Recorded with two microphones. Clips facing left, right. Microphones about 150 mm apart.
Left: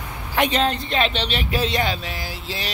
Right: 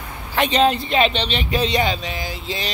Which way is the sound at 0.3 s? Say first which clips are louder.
Even; 10° left (ahead or behind).